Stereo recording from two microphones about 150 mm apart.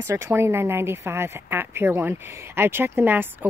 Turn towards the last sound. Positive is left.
turn(degrees=-10)  # may be behind; listen again after turning